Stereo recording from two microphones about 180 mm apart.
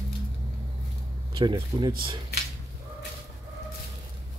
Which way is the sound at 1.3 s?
25° right (ahead or behind).